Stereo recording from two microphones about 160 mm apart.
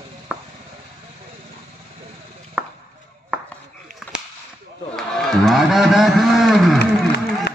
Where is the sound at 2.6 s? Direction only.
5° right (ahead or behind).